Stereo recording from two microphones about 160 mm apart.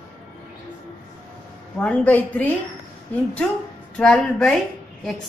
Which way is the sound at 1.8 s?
10° left (ahead or behind).